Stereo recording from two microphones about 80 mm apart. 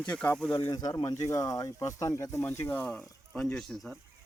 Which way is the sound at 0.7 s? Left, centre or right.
Left.